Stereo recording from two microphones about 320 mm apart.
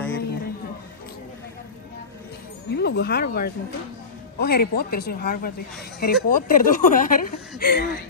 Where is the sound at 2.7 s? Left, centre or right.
Left.